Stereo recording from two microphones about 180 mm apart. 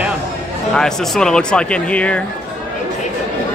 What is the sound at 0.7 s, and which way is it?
Speech, centre (ahead or behind).